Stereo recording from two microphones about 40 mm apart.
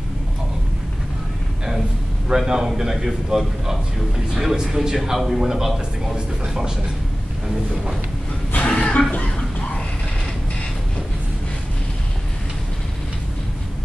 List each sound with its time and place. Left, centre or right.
2.2 s a man's voice: centre
8.6 s chuckle: left
9.1 s a sound: left